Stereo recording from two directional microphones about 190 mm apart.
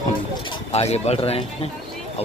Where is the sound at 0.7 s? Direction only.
35° left (ahead or behind).